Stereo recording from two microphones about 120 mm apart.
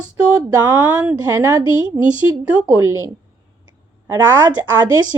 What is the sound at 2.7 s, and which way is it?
Speech, 25° right (ahead or behind).